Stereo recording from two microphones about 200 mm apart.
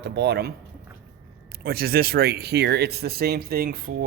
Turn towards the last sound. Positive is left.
turn(degrees=-50)  # may be behind; listen again after turning